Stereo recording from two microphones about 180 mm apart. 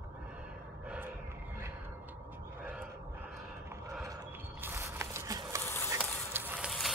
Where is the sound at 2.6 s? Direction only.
5° right (ahead or behind).